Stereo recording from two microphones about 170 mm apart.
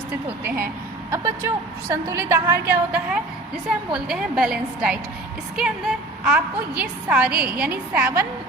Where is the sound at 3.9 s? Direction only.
5° right (ahead or behind).